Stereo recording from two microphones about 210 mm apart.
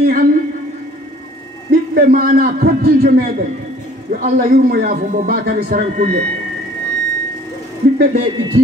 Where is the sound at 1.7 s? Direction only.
45° right (ahead or behind).